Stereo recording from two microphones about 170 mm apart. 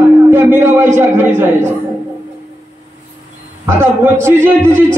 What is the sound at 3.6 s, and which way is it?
A man's voice, 15° right (ahead or behind).